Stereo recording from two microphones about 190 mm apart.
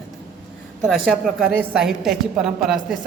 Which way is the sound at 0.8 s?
Centre (ahead or behind).